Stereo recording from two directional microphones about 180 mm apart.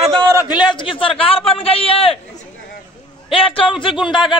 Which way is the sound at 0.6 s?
25° left (ahead or behind).